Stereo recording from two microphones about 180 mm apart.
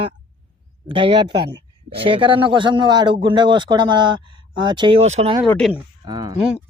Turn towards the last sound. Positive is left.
turn(degrees=-20)  # may be behind; listen again after turning